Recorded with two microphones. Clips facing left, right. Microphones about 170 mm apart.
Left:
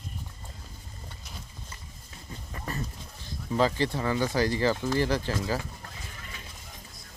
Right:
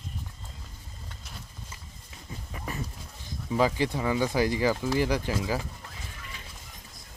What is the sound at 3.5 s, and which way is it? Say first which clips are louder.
Speech: even; 10° right (ahead or behind).